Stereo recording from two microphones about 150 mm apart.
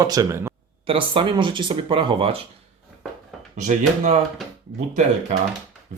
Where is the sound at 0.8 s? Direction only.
35° right (ahead or behind).